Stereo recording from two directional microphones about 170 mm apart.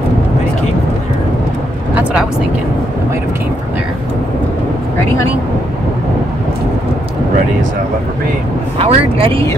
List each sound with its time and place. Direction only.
8.7 s speech: 30° right (ahead or behind)